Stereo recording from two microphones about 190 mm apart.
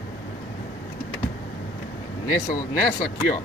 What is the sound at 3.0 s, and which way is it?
Speech, 45° left (ahead or behind).